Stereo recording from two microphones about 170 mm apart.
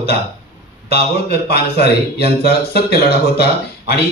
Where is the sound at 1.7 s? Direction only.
35° right (ahead or behind).